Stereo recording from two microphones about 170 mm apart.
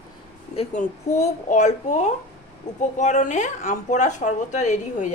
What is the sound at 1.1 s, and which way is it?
Speech, 45° left (ahead or behind).